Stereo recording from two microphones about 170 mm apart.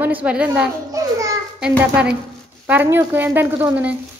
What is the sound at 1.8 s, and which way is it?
A woman's voice, 5° right (ahead or behind).